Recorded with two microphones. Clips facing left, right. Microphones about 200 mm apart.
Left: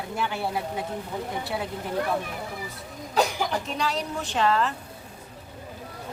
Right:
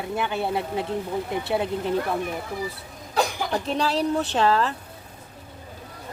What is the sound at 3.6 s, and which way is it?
Speech, 35° right (ahead or behind).